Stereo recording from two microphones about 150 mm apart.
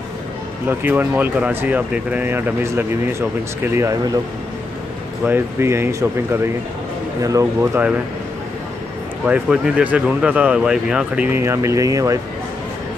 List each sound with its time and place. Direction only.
0.7 s speech: 10° right (ahead or behind)
5.2 s speech: 15° right (ahead or behind)
9.2 s speech: 5° right (ahead or behind); by 12.2 s 20° right (ahead or behind)